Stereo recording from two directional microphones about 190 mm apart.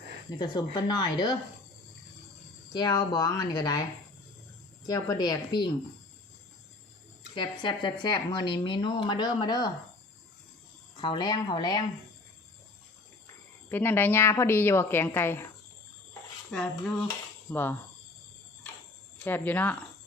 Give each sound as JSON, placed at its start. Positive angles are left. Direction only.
{"t": 0.3, "sound": "speech", "side_deg": 20}
{"t": 2.7, "sound": "speech", "side_deg": 20}
{"t": 4.9, "sound": "speech", "side_deg": 20}
{"t": 7.3, "sound": "speech", "side_deg": 25}
{"t": 10.9, "sound": "speech", "side_deg": 25}
{"t": 13.2, "sound": "speech", "side_deg": 10}
{"t": 16.5, "sound": "dishes", "side_deg": 5}
{"t": 17.5, "sound": "speech", "side_deg": 10}
{"t": 19.2, "sound": "speech", "side_deg": 10}